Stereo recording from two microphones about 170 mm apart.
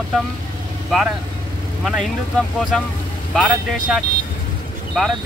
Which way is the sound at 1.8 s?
Centre (ahead or behind).